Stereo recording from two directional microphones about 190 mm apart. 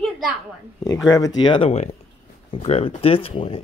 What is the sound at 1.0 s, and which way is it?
Speech, 20° left (ahead or behind).